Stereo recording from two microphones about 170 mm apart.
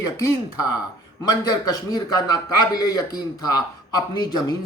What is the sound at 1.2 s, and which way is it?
Speech, 25° left (ahead or behind).